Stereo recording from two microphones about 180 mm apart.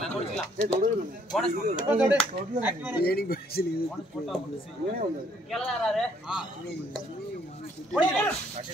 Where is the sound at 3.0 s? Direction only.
55° left (ahead or behind).